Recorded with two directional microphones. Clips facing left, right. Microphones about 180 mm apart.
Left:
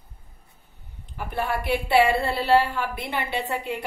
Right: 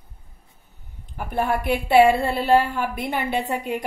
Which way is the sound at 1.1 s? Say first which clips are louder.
Right 4 dB; 50° right (ahead or behind).